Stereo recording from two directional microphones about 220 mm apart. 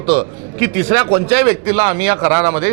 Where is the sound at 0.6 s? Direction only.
15° right (ahead or behind).